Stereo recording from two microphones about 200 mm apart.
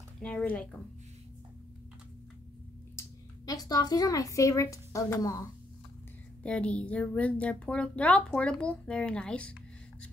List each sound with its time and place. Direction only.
0.2 s speech: 5° left (ahead or behind)
3.0 s speech: 15° left (ahead or behind)
6.4 s speech: 5° left (ahead or behind)